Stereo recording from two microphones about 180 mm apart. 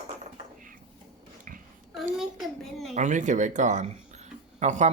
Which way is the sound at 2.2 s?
Centre (ahead or behind).